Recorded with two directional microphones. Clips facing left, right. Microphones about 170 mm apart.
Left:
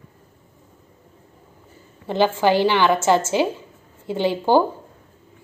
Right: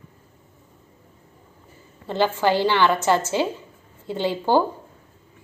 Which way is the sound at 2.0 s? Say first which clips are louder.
Left 3 dB; 15° left (ahead or behind).